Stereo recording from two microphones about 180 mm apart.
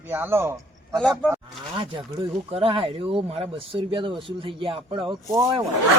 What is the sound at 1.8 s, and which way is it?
Speech, 30° right (ahead or behind).